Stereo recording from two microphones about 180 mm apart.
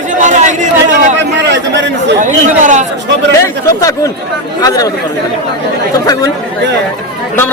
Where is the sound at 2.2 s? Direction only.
45° right (ahead or behind).